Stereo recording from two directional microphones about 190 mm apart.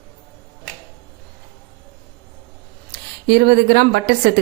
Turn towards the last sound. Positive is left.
turn(degrees=-60)  # may be behind; listen again after turning